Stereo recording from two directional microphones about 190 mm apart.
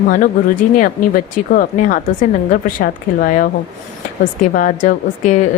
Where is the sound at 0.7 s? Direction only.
45° left (ahead or behind).